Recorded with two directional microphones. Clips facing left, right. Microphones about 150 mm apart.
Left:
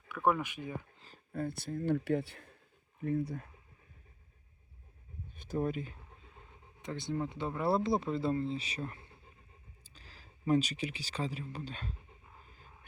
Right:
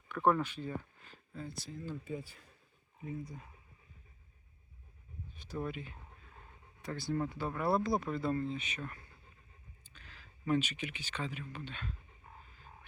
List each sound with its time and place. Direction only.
0.1 s speech: 10° left (ahead or behind)
1.1 s speech: 55° left (ahead or behind)
5.5 s speech: 40° left (ahead or behind)
6.8 s speech: 20° left (ahead or behind); by 11.9 s 35° left (ahead or behind)